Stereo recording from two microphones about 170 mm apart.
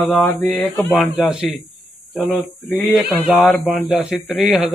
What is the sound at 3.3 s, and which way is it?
Speech, centre (ahead or behind).